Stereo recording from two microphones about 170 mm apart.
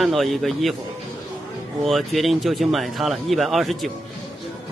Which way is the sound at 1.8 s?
Centre (ahead or behind).